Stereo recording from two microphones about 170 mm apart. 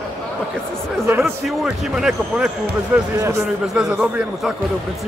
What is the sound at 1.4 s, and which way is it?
Speech, 5° right (ahead or behind).